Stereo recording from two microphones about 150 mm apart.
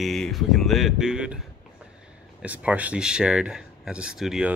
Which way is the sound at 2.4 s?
10° right (ahead or behind).